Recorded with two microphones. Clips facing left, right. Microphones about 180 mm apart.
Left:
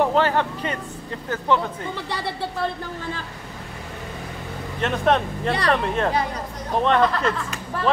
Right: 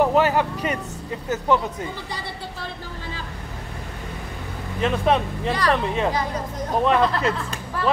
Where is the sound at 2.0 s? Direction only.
65° left (ahead or behind).